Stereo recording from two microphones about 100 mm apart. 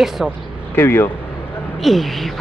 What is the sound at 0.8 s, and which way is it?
Speech, 25° left (ahead or behind).